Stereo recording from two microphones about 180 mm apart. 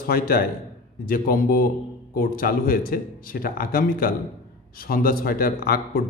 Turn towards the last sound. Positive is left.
turn(degrees=55)  # may be behind; listen again after turning